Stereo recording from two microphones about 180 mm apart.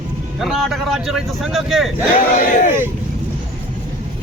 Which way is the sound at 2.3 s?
45° left (ahead or behind).